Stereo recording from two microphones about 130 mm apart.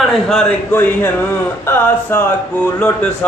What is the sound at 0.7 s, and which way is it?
Speech, 15° left (ahead or behind).